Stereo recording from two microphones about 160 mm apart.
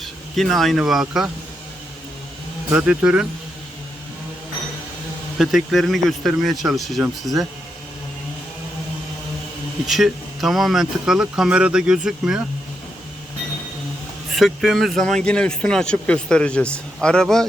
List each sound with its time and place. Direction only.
0.0 s speech: centre (ahead or behind)
2.7 s speech: 10° right (ahead or behind)
5.4 s speech: centre (ahead or behind)
9.8 s speech: centre (ahead or behind)
14.3 s speech: centre (ahead or behind)